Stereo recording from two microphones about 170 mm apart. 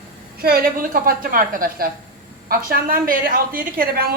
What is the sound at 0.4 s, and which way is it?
A man's voice, 60° right (ahead or behind).